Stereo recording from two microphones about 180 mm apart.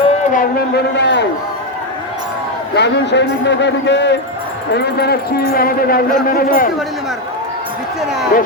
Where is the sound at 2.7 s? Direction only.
75° left (ahead or behind).